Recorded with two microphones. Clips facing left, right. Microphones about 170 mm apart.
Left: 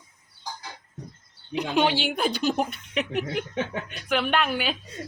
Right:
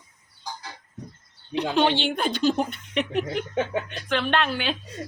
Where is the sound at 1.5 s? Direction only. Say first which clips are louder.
Right 1 dB; 10° left (ahead or behind).